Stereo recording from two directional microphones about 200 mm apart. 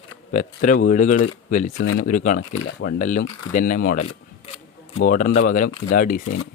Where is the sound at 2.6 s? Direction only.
65° left (ahead or behind).